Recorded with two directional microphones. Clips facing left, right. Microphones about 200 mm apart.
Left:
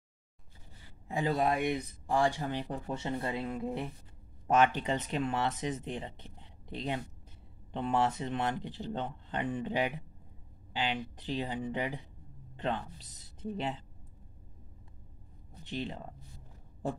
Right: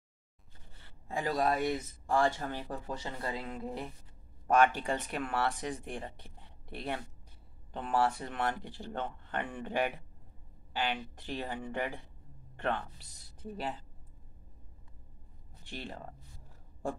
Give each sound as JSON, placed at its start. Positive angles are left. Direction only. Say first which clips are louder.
{"t": 0.8, "sound": "a man's voice", "louder": "left 3 dB", "side_deg": 20}
{"t": 15.6, "sound": "speech", "louder": "left 5 dB", "side_deg": 20}